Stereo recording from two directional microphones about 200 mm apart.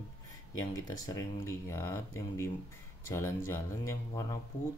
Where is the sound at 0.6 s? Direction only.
20° left (ahead or behind).